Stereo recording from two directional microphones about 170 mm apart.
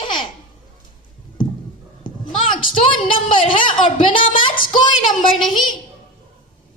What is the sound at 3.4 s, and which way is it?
A woman's voice, 30° left (ahead or behind).